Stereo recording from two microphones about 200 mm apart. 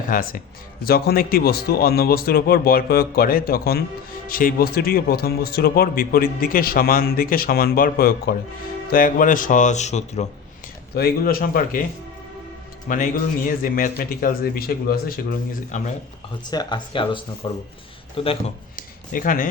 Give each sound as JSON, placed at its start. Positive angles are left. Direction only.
{"t": 0.1, "sound": "a man's voice", "side_deg": 45}
{"t": 10.9, "sound": "a man's voice", "side_deg": 50}
{"t": 12.9, "sound": "a man's voice", "side_deg": 40}
{"t": 16.5, "sound": "speech", "side_deg": 20}
{"t": 18.8, "sound": "a sound", "side_deg": 45}